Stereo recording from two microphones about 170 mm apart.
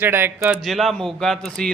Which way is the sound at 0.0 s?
10° right (ahead or behind).